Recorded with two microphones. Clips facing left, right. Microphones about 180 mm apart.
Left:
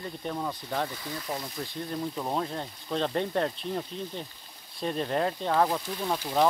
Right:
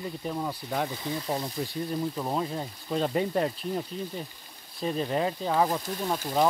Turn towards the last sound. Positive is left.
turn(degrees=-5)  # may be behind; listen again after turning